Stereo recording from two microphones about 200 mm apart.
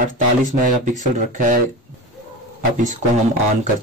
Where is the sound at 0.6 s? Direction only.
40° right (ahead or behind).